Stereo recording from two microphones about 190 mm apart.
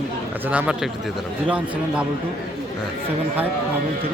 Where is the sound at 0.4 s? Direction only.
10° right (ahead or behind).